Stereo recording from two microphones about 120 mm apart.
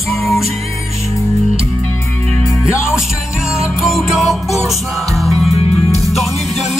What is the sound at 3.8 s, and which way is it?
Music, centre (ahead or behind).